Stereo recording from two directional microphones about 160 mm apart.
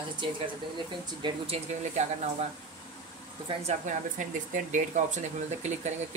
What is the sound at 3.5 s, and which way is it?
Speech, 35° right (ahead or behind).